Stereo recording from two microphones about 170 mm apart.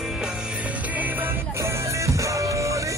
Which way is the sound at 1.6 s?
20° right (ahead or behind).